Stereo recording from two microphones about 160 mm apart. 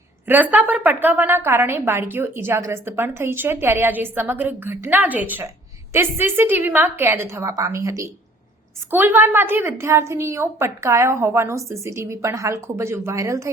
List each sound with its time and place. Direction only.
0.3 s a woman's voice: 10° right (ahead or behind)